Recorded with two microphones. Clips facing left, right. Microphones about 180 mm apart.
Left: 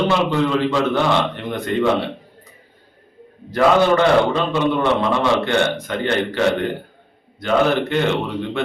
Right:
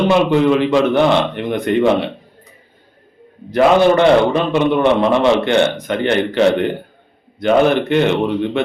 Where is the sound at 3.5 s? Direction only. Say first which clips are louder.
Right 3 dB; 20° right (ahead or behind).